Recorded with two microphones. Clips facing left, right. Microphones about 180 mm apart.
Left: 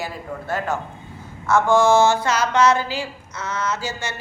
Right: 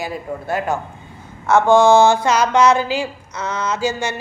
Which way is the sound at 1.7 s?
20° right (ahead or behind).